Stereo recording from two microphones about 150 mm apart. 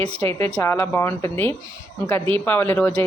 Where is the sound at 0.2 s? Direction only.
15° left (ahead or behind).